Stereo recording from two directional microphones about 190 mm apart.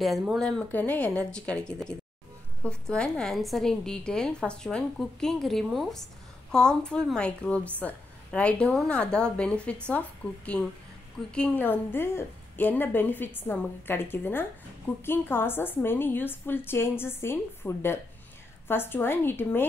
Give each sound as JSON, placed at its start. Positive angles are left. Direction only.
{"t": 0.0, "sound": "a woman's voice", "side_deg": 0}